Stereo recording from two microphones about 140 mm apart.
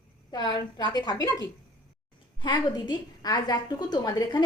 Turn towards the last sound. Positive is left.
turn(degrees=30)  # may be behind; listen again after turning